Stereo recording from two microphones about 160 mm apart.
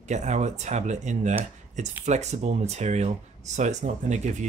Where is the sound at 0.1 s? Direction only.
45° right (ahead or behind).